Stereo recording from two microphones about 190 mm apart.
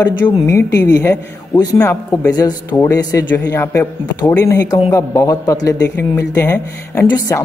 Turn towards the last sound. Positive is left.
turn(degrees=15)  # may be behind; listen again after turning